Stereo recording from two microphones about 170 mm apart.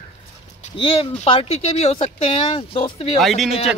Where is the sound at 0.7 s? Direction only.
30° left (ahead or behind).